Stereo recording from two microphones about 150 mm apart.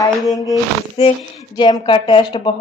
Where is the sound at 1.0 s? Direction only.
40° left (ahead or behind).